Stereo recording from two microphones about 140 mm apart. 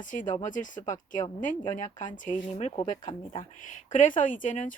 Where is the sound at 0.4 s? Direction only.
65° left (ahead or behind).